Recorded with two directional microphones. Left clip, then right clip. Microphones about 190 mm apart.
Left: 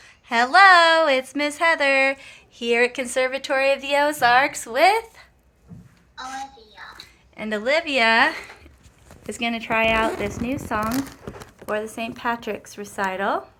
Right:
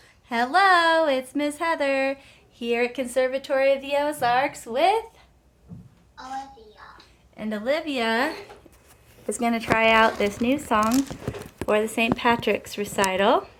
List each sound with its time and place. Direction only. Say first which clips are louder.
0.3 s a woman's voice: left 6 dB; 5° right (ahead or behind); by 5.2 s 10° left (ahead or behind)
6.1 s a child's voice: left 1 dB; 20° right (ahead or behind)
7.3 s a woman's voice: left 4 dB; 10° left (ahead or behind)
10.8 s speech: right 2 dB; 45° left (ahead or behind)
11.7 s speech: right 5 dB; 5° right (ahead or behind)